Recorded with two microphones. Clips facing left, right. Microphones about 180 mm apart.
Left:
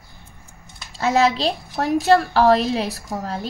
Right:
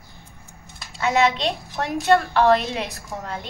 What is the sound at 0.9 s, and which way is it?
A woman's voice, 35° left (ahead or behind).